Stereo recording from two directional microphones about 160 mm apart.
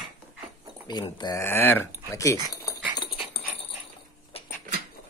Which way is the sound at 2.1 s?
20° left (ahead or behind).